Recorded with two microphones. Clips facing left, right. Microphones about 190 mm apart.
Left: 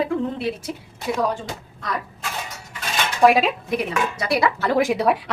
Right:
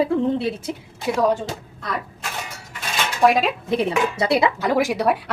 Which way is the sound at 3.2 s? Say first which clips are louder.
Left 1 dB; centre (ahead or behind).